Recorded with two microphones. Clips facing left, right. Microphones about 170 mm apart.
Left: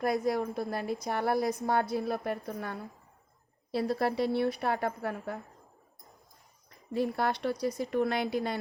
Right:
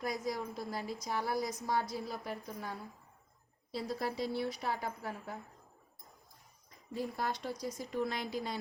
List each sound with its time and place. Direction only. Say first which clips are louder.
0.0 s a woman's voice: left 8 dB; 60° left (ahead or behind)
6.7 s a woman's voice: left 8 dB; 70° left (ahead or behind)